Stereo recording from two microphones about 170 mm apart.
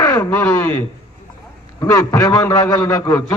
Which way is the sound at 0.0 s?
20° left (ahead or behind).